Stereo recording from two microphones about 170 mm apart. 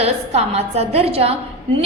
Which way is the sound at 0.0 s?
40° right (ahead or behind).